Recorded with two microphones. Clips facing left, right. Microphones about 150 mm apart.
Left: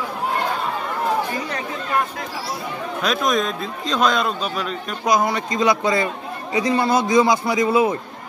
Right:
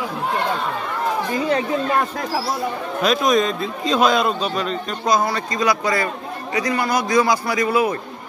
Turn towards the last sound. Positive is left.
turn(degrees=25)  # may be behind; listen again after turning